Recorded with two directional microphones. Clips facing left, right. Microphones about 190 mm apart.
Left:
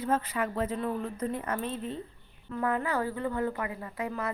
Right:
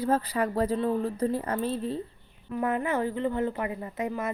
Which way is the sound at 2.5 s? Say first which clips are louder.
Right 2 dB; 20° right (ahead or behind).